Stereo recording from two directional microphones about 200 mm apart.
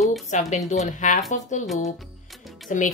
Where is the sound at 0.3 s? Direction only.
35° left (ahead or behind).